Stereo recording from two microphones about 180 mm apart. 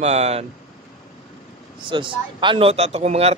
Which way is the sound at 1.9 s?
25° right (ahead or behind).